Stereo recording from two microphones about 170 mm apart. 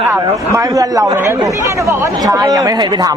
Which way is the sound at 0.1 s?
20° right (ahead or behind).